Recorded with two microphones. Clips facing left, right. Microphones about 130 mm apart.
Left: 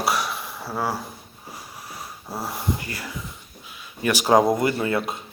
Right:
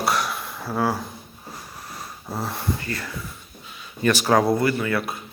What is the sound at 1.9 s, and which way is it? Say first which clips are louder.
Speech: right 2 dB; 5° left (ahead or behind).